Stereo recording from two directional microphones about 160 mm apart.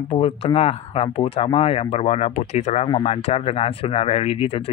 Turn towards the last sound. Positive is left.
turn(degrees=35)  # may be behind; listen again after turning